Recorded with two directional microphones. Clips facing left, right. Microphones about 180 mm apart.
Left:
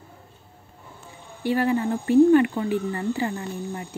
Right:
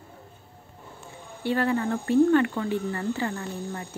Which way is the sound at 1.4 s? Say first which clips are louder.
Left 2 dB; 10° left (ahead or behind).